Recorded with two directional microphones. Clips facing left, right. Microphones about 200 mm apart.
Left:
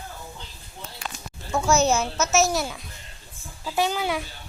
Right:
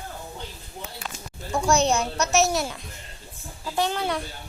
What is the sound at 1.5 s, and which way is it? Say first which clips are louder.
A child's voice: left 1 dB; 5° left (ahead or behind).